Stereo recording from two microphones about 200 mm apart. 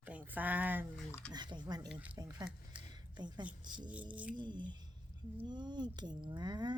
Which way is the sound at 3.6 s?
20° right (ahead or behind).